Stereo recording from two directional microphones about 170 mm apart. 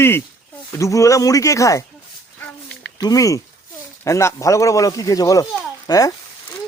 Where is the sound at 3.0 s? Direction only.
20° left (ahead or behind).